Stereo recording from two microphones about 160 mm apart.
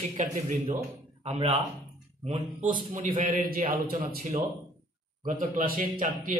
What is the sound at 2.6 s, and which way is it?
A man's voice, 55° right (ahead or behind).